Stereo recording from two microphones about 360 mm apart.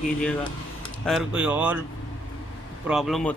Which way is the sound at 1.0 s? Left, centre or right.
Centre.